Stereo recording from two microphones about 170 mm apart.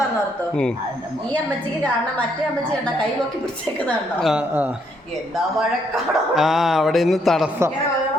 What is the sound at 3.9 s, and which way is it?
Speech, centre (ahead or behind).